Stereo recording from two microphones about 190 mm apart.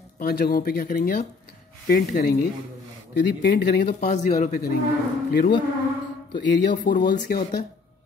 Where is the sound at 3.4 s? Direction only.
60° left (ahead or behind).